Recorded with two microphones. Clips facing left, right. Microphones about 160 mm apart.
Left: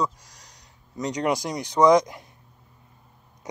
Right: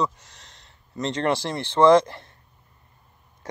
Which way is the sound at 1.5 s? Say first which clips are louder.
Right 2 dB; centre (ahead or behind).